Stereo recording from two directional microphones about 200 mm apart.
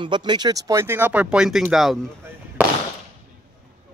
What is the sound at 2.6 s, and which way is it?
Firecracker, 10° right (ahead or behind).